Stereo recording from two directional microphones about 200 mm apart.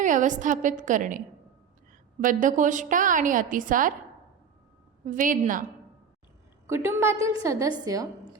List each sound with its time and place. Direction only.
0.0 s a woman's voice: 40° right (ahead or behind)
2.2 s a woman's voice: 40° right (ahead or behind)
5.0 s a woman's voice: 40° right (ahead or behind)
6.7 s a woman's voice: 15° right (ahead or behind)